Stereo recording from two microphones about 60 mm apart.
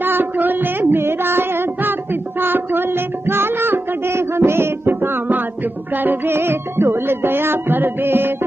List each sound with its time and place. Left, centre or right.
0.0 s music: right